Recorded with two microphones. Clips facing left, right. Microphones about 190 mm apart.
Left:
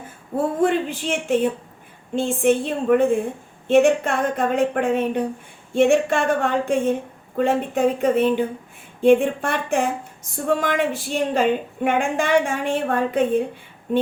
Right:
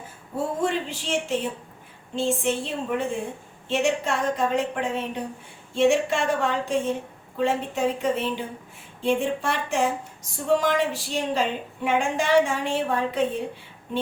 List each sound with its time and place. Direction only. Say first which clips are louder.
0.6 s a woman's voice: left 6 dB; 55° left (ahead or behind)